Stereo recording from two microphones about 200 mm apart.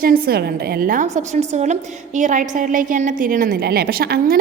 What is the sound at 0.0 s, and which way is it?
A woman's voice, 45° right (ahead or behind).